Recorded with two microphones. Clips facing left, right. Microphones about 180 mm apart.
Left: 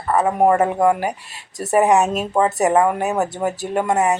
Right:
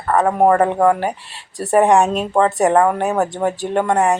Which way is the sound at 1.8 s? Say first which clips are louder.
Right 2 dB; 5° left (ahead or behind).